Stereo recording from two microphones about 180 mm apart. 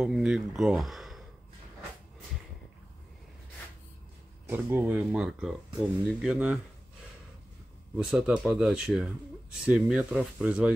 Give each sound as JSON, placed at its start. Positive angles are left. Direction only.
{"t": 0.0, "sound": "speech", "side_deg": -5}
{"t": 4.5, "sound": "speech", "side_deg": -10}
{"t": 8.0, "sound": "speech", "side_deg": 0}